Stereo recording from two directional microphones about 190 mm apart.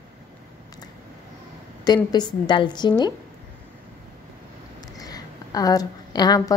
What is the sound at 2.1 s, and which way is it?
Speech, 25° left (ahead or behind).